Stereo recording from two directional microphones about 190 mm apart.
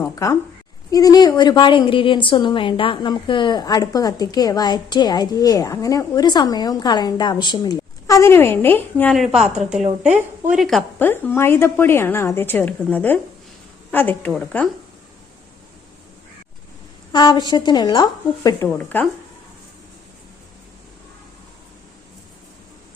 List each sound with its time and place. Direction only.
0.0 s a woman's voice: 15° left (ahead or behind)
9.1 s a woman's voice: centre (ahead or behind)
11.1 s a woman's voice: 10° left (ahead or behind)
17.1 s a woman's voice: 25° left (ahead or behind)